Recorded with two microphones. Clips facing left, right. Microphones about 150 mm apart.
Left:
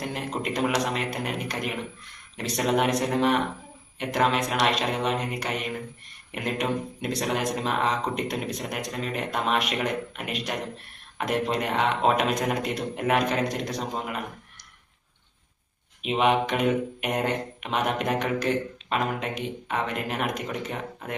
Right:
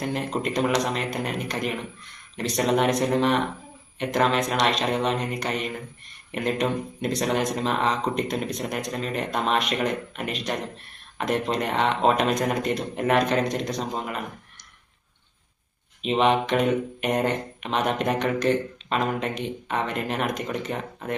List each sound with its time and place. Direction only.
0.1 s speech: 5° left (ahead or behind)
16.0 s speech: 5° left (ahead or behind)